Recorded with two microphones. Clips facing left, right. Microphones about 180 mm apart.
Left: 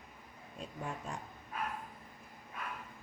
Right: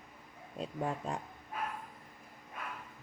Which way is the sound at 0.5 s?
35° right (ahead or behind).